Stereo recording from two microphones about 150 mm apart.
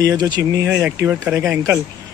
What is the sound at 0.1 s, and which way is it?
Speech, 25° right (ahead or behind).